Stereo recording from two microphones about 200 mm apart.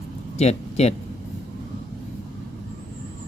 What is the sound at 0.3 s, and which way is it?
Speech, 35° left (ahead or behind).